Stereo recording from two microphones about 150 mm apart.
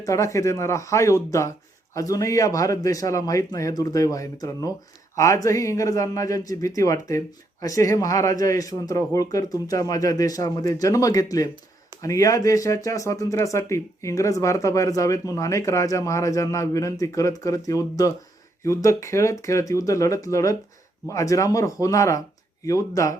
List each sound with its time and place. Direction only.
0.0 s speech: 20° left (ahead or behind)